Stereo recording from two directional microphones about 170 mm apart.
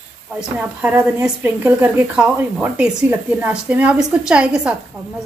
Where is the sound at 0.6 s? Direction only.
10° right (ahead or behind).